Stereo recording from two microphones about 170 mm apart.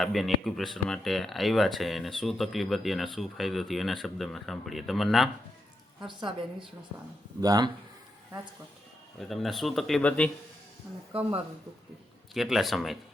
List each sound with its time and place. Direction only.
0.0 s speech: centre (ahead or behind)
6.1 s a woman's voice: 30° right (ahead or behind)
9.3 s speech: centre (ahead or behind)
11.1 s speech: 35° right (ahead or behind)
12.3 s speech: centre (ahead or behind)